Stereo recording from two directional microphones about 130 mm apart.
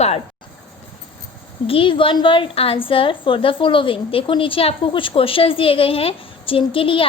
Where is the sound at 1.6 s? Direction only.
45° left (ahead or behind).